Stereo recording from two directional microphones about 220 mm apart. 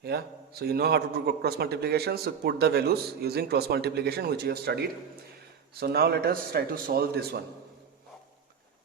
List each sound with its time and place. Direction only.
0.0 s a man's voice: 45° right (ahead or behind)